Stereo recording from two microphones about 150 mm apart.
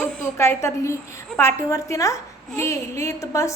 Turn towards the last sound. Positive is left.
turn(degrees=20)  # may be behind; listen again after turning